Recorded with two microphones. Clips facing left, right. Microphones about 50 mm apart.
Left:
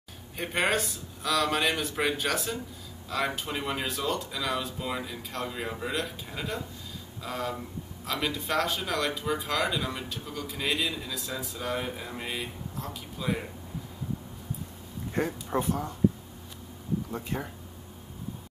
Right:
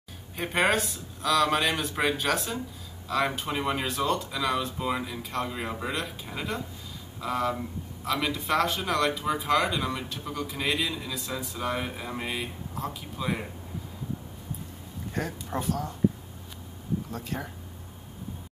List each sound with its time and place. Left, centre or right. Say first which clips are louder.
0.4 s a man's voice: right 2 dB; centre
15.1 s speech: left 3 dB; centre
17.1 s speech: left 1 dB; centre